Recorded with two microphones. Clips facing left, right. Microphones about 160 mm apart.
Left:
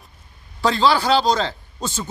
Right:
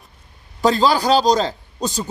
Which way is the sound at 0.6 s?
40° right (ahead or behind).